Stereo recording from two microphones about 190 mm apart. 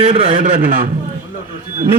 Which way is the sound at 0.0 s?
25° right (ahead or behind).